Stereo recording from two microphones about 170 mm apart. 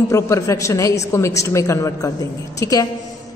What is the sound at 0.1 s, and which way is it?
A woman's voice, 15° left (ahead or behind).